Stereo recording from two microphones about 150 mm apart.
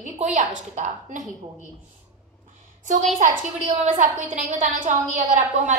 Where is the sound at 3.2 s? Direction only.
55° right (ahead or behind).